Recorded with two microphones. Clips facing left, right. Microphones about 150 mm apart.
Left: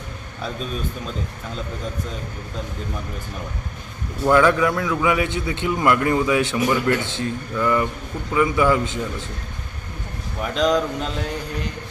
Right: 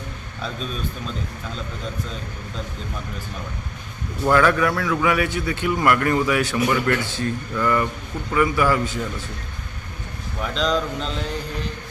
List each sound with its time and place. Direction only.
4.3 s a man's voice: 15° left (ahead or behind)
10.4 s a man's voice: 15° left (ahead or behind)